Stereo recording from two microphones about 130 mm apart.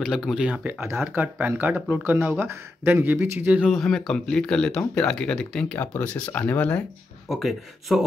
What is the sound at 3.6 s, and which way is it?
Speech, centre (ahead or behind).